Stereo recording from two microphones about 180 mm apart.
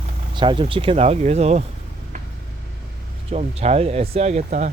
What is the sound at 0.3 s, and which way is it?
Speech, 30° right (ahead or behind).